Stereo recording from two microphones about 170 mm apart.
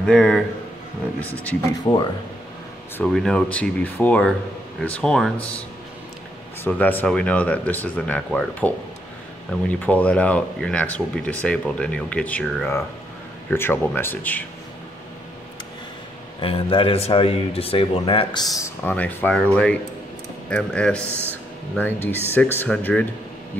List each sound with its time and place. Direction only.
0.0 s speech: 5° left (ahead or behind)
1.9 s speech: 20° left (ahead or behind)
3.0 s speech: centre (ahead or behind)
6.6 s speech: 10° left (ahead or behind)
16.3 s a man's voice: 30° left (ahead or behind)
18.6 s speech: 10° left (ahead or behind)